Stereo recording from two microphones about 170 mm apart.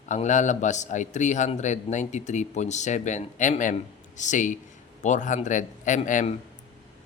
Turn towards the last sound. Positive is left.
turn(degrees=45)  # may be behind; listen again after turning